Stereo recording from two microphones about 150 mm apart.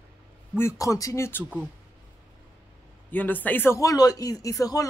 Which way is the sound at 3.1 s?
10° left (ahead or behind).